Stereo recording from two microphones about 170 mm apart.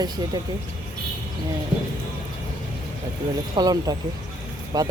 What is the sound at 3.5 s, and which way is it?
Speech, 25° right (ahead or behind).